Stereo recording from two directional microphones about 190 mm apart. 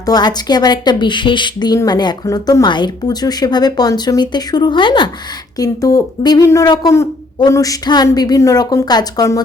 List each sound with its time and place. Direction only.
0.0 s a woman's voice: 20° left (ahead or behind)